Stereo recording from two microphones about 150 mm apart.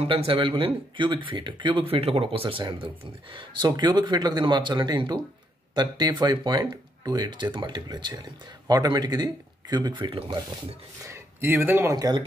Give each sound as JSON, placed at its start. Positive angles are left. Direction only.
{"t": 0.0, "sound": "speech", "side_deg": -40}
{"t": 11.1, "sound": "speech", "side_deg": -15}